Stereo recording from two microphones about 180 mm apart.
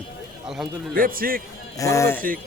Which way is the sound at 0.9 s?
50° right (ahead or behind).